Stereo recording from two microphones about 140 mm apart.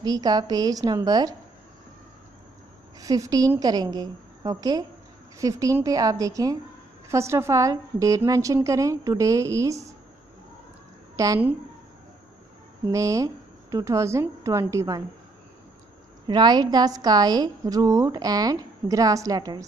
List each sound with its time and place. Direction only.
0.0 s a woman's voice: 25° right (ahead or behind)
3.0 s a woman's voice: 25° right (ahead or behind)
11.1 s a woman's voice: 25° right (ahead or behind)
12.9 s a woman's voice: 25° right (ahead or behind)
16.3 s a woman's voice: 30° right (ahead or behind)